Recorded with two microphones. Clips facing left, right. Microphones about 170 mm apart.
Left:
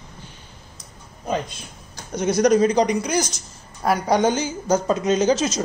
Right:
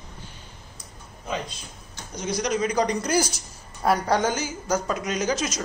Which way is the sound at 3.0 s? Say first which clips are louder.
Even; 5° right (ahead or behind).